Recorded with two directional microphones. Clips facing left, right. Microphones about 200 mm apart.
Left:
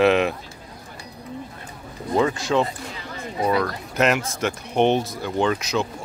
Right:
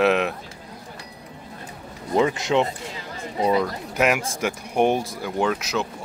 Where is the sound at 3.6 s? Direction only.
10° right (ahead or behind).